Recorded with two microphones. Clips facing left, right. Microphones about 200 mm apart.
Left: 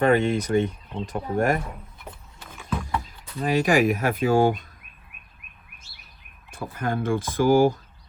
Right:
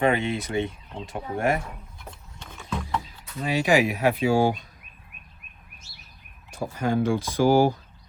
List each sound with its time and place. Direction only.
0.0 s speech: 45° left (ahead or behind)
2.0 s a sound: 5° left (ahead or behind)
3.0 s speech: 45° left (ahead or behind)
6.7 s speech: 55° left (ahead or behind)